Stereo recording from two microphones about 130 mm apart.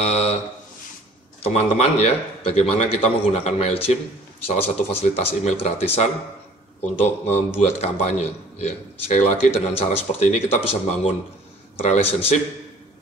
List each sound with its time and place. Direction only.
0.0 s speech: 55° left (ahead or behind)
1.4 s a man's voice: 50° left (ahead or behind)